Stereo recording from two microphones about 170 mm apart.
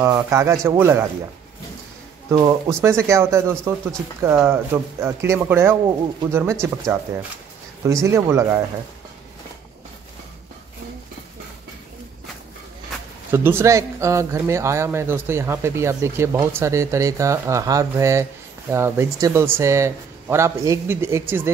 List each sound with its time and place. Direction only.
0.0 s speech: 15° right (ahead or behind)
2.2 s speech: 20° right (ahead or behind)
13.3 s speech: 15° right (ahead or behind)